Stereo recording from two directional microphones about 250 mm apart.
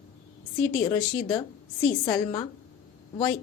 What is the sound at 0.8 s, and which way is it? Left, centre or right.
Speech, centre.